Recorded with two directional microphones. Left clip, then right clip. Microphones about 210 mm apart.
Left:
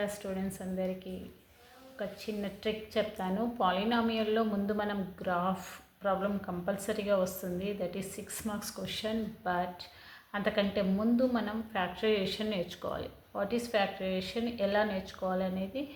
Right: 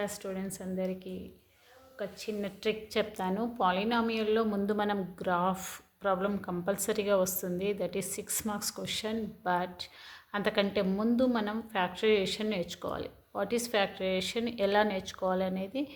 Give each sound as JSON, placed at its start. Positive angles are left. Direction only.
{"t": 0.0, "sound": "a woman's voice", "side_deg": -20}
{"t": 2.0, "sound": "a woman's voice", "side_deg": -25}